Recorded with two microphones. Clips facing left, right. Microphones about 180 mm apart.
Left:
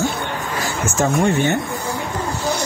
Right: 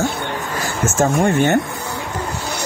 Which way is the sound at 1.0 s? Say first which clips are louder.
Right 2 dB; 45° right (ahead or behind).